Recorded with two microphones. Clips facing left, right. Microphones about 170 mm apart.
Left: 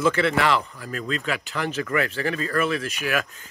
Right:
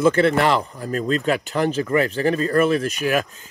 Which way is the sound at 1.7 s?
30° right (ahead or behind).